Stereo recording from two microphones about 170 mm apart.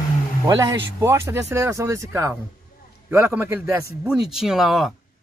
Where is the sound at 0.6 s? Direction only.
15° right (ahead or behind).